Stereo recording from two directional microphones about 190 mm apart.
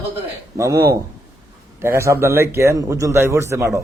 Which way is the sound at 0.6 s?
15° right (ahead or behind).